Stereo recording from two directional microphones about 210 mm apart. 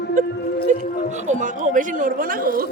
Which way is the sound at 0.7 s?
35° right (ahead or behind).